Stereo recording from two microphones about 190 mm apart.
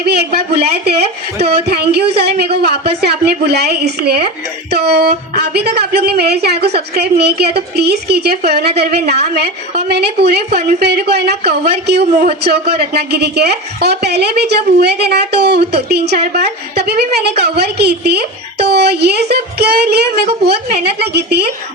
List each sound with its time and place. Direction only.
0.0 s a man's voice: 60° right (ahead or behind)